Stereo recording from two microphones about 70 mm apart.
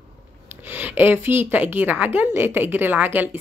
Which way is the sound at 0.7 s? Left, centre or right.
Right.